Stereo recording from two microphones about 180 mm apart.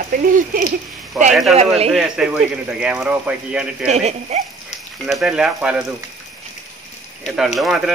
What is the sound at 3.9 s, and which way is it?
Speech, 40° right (ahead or behind).